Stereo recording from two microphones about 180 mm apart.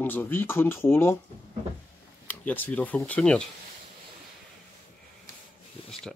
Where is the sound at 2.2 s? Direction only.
10° left (ahead or behind).